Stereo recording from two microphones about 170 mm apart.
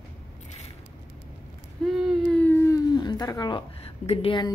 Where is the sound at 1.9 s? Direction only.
Centre (ahead or behind).